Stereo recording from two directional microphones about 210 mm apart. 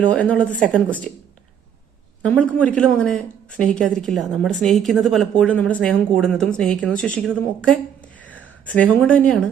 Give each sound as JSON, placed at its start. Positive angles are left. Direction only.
{"t": 0.1, "sound": "a woman's voice", "side_deg": 5}
{"t": 2.2, "sound": "a woman's voice", "side_deg": 5}